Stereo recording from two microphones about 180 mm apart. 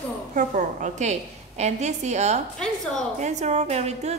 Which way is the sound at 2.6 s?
5° left (ahead or behind).